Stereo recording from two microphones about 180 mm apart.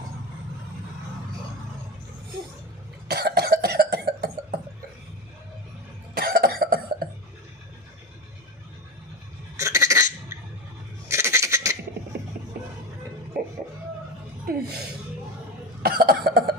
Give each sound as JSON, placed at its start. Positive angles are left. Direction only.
{"t": 3.1, "sound": "cough", "side_deg": -60}
{"t": 6.1, "sound": "cough", "side_deg": -55}
{"t": 9.6, "sound": "a sound", "side_deg": -15}
{"t": 11.1, "sound": "goat", "side_deg": -15}
{"t": 13.4, "sound": "music", "side_deg": -55}
{"t": 15.8, "sound": "cough", "side_deg": -55}